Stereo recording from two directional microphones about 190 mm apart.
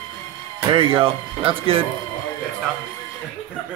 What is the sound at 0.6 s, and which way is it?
Speech, 25° right (ahead or behind).